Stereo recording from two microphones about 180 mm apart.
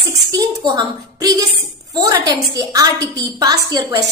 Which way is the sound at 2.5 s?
20° right (ahead or behind).